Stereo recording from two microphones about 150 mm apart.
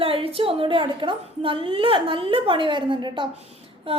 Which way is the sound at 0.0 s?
40° right (ahead or behind).